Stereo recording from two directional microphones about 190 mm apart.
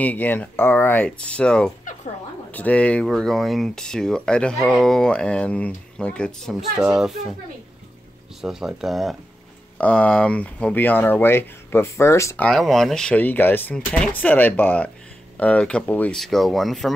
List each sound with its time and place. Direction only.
0.0 s speech: 10° left (ahead or behind)
8.4 s speech: centre (ahead or behind); by 12.4 s 15° left (ahead or behind)
12.4 s speech: centre (ahead or behind)